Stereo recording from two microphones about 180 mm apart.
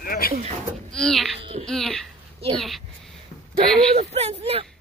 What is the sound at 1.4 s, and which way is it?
Speech, 30° right (ahead or behind).